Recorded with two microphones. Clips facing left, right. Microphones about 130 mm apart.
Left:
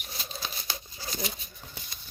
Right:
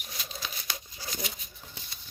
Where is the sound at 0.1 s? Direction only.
30° left (ahead or behind).